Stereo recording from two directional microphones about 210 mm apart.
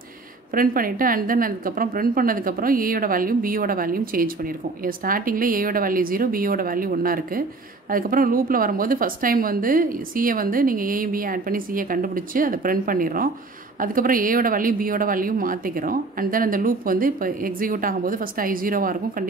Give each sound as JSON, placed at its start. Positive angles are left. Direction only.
{"t": 0.6, "sound": "a woman's voice", "side_deg": -40}